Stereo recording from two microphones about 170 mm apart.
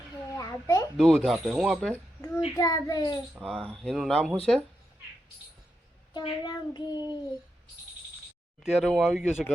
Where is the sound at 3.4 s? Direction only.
Centre (ahead or behind).